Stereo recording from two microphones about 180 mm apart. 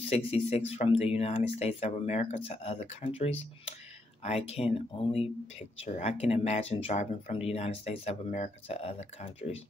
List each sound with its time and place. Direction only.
0.0 s speech: 35° left (ahead or behind)